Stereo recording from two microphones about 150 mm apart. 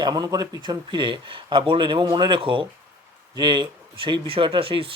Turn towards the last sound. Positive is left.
turn(degrees=-35)  # may be behind; listen again after turning